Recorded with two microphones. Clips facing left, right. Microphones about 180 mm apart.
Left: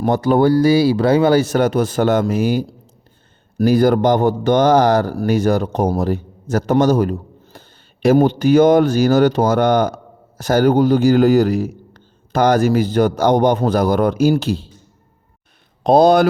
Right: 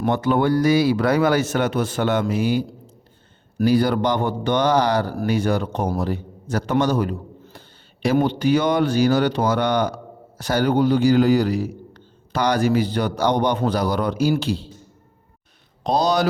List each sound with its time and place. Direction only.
0.0 s a man's voice: 40° left (ahead or behind)
15.8 s speech: 55° left (ahead or behind)